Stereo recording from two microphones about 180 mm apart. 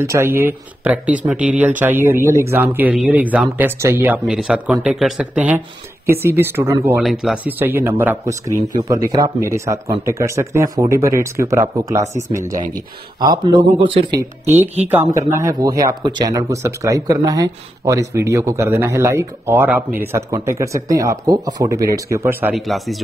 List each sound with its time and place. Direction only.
0.0 s speech: 15° right (ahead or behind)
7.0 s speech: centre (ahead or behind); by 14.2 s 25° right (ahead or behind)
14.9 s speech: 10° right (ahead or behind)